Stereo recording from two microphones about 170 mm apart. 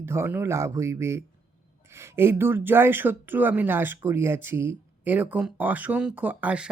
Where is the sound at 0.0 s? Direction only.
15° right (ahead or behind).